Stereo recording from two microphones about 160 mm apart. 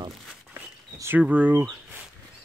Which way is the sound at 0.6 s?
15° right (ahead or behind).